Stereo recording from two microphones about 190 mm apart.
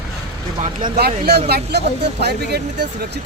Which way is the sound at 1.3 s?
55° right (ahead or behind).